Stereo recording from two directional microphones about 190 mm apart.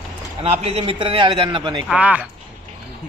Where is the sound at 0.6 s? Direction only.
30° right (ahead or behind).